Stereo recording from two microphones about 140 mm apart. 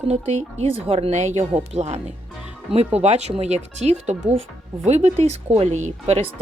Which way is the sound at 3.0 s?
50° right (ahead or behind).